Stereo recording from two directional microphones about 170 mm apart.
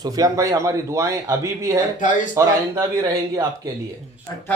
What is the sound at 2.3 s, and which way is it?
Speech, 15° right (ahead or behind).